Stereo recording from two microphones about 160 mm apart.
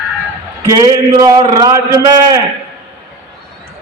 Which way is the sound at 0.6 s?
20° right (ahead or behind).